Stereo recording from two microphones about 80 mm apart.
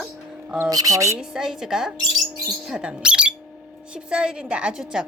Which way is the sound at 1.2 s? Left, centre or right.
Centre.